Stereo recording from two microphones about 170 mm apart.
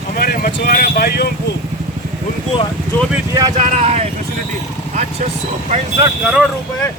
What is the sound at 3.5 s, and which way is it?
Speech, 45° right (ahead or behind).